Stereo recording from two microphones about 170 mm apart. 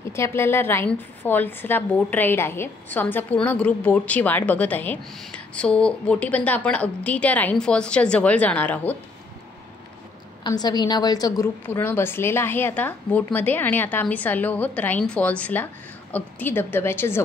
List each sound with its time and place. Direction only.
0.1 s a woman's voice: 15° left (ahead or behind)
10.6 s a woman's voice: 25° left (ahead or behind)